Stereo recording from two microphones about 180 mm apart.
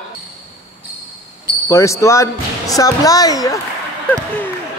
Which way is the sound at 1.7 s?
15° left (ahead or behind).